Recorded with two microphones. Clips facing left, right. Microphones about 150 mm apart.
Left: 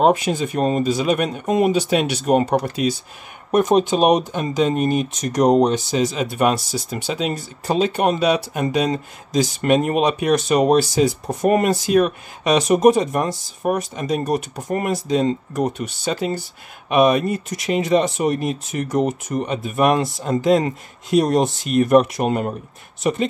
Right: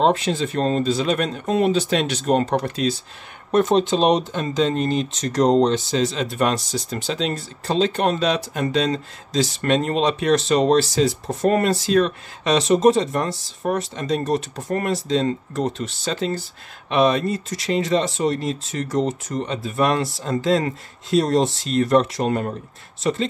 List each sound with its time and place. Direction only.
0.0 s speech: 10° left (ahead or behind)